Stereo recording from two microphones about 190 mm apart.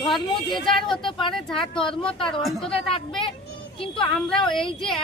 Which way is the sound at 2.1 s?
25° left (ahead or behind).